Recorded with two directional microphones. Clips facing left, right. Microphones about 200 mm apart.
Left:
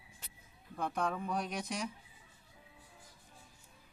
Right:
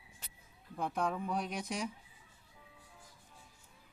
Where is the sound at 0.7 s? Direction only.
5° right (ahead or behind).